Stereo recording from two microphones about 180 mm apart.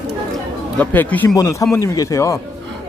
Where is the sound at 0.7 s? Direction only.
10° left (ahead or behind).